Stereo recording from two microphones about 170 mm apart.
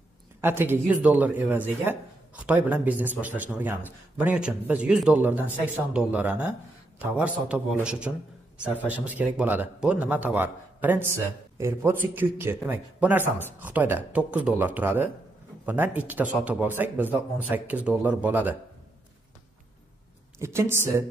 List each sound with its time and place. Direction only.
0.4 s speech: 10° right (ahead or behind)
20.3 s speech: 15° right (ahead or behind)